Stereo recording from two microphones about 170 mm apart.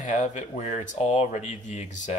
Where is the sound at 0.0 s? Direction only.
45° left (ahead or behind).